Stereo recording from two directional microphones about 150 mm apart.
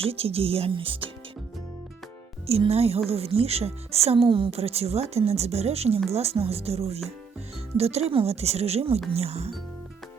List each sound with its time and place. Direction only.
0.0 s speech: 40° right (ahead or behind)
2.5 s speech: 40° right (ahead or behind)